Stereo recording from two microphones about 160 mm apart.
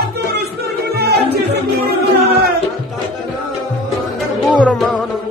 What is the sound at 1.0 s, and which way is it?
Music, 90° right.